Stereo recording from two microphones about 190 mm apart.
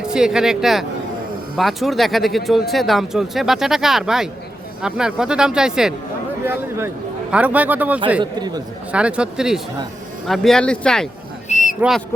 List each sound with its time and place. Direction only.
0.0 s a man's voice: 5° right (ahead or behind)
8.2 s speech: 20° right (ahead or behind)
8.9 s speech: 5° right (ahead or behind)
11.4 s a sound: 40° left (ahead or behind)
11.8 s speech: centre (ahead or behind)